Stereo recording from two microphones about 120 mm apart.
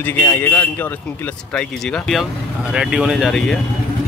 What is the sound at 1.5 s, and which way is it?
Speech, 5° left (ahead or behind).